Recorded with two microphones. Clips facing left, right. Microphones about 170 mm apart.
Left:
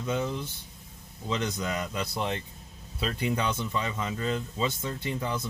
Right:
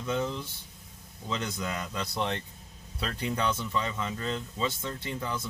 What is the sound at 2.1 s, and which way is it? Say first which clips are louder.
Speech: even; 5° left (ahead or behind).